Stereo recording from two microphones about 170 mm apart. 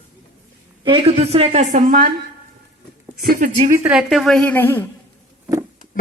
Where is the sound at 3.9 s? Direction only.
Centre (ahead or behind).